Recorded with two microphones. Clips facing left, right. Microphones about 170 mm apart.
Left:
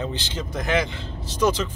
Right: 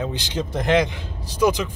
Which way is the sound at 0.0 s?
15° right (ahead or behind).